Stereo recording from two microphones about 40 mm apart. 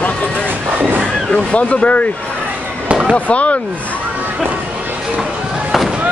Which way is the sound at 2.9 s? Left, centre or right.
Centre.